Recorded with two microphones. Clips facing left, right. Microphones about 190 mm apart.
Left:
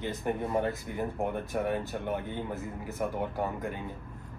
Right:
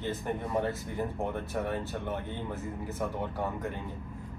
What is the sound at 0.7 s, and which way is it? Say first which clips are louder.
Speech: even; 15° left (ahead or behind).